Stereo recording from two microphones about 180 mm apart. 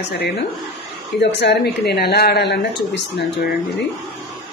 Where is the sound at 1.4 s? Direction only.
65° left (ahead or behind).